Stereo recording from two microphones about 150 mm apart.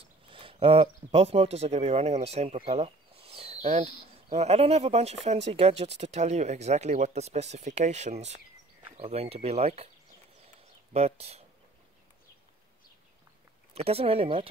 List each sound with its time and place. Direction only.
0.0 s speech: 35° right (ahead or behind)
10.9 s speech: 45° right (ahead or behind)
13.7 s speech: 40° right (ahead or behind)